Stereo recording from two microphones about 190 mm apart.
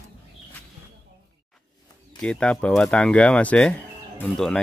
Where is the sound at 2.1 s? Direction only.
5° left (ahead or behind).